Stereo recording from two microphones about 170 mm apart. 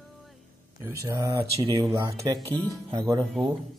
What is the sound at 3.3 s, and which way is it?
Speech, centre (ahead or behind).